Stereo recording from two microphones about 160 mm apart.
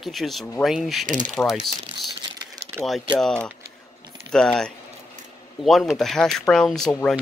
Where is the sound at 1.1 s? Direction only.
55° right (ahead or behind).